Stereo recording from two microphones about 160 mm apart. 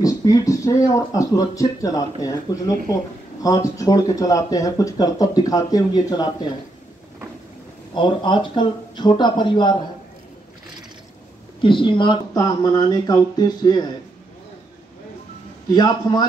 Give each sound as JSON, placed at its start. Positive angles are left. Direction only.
{"t": 0.0, "sound": "speech", "side_deg": 20}
{"t": 7.9, "sound": "speech", "side_deg": 30}
{"t": 11.6, "sound": "speech", "side_deg": 30}
{"t": 15.7, "sound": "speech", "side_deg": 25}